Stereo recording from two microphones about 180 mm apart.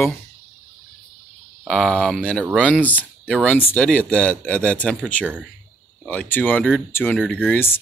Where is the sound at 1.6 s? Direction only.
5° left (ahead or behind).